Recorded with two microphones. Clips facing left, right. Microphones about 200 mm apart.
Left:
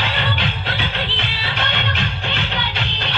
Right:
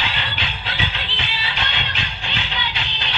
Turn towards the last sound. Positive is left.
turn(degrees=55)  # may be behind; listen again after turning